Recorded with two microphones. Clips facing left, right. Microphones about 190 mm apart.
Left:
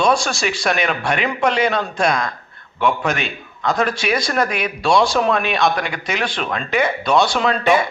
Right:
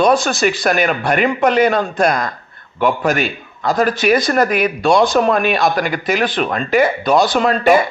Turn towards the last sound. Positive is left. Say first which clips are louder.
# right 3 dB
turn(degrees=-5)  # may be behind; listen again after turning